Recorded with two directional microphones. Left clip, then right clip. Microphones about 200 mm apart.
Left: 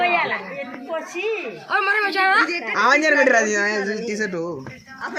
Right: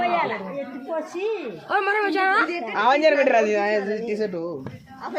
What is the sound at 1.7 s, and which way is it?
Speech, 45° right (ahead or behind).